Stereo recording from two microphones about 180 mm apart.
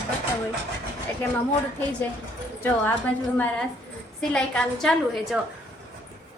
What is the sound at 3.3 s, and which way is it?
A woman's voice, 10° left (ahead or behind).